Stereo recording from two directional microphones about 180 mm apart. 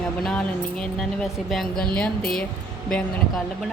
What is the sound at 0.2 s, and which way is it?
Speech, 5° left (ahead or behind).